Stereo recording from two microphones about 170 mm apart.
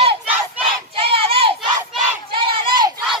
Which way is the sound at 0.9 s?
35° right (ahead or behind).